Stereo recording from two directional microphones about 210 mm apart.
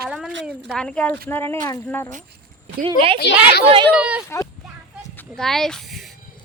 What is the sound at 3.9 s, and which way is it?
Speech, 5° right (ahead or behind).